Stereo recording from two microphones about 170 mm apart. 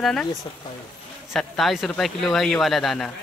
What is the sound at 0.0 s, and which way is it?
Speech, 5° left (ahead or behind).